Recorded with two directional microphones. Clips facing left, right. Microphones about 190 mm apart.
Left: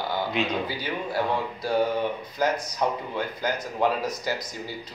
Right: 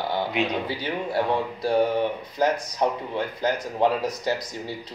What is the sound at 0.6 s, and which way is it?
Speech, 25° right (ahead or behind).